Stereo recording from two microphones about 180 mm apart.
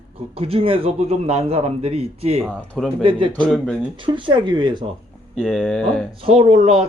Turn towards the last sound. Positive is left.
turn(degrees=-35)  # may be behind; listen again after turning